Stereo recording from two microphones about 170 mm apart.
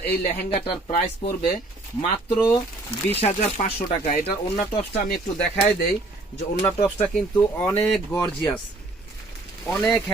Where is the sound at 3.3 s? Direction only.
40° left (ahead or behind).